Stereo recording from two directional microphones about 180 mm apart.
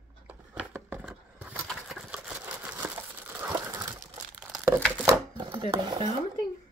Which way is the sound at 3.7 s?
15° right (ahead or behind).